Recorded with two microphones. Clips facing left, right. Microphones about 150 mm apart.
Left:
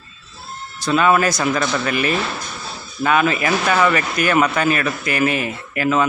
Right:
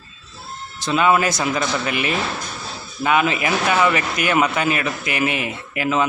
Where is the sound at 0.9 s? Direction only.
20° right (ahead or behind).